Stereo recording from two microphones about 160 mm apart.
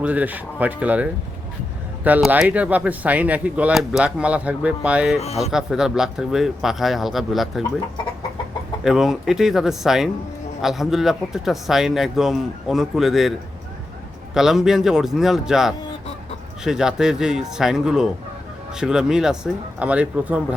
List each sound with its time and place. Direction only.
0.0 s speech: 10° right (ahead or behind)
2.0 s speech: 10° right (ahead or behind)
5.2 s speech: 40° left (ahead or behind)
5.5 s a man's voice: 5° right (ahead or behind)
8.8 s a man's voice: centre (ahead or behind)
14.3 s a man's voice: 5° right (ahead or behind)